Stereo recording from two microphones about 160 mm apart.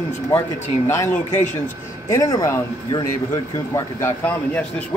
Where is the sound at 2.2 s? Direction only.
20° left (ahead or behind).